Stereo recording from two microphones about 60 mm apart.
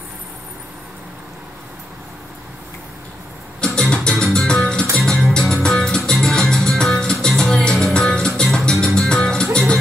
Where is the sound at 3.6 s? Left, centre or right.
Centre.